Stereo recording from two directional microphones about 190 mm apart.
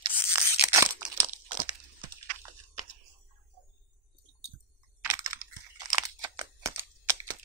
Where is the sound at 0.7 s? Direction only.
10° right (ahead or behind).